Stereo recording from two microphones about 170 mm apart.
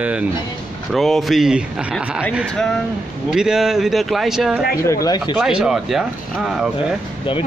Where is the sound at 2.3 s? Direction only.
5° left (ahead or behind).